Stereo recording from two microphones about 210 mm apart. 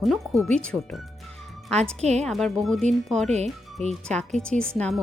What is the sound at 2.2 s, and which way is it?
Speech, centre (ahead or behind).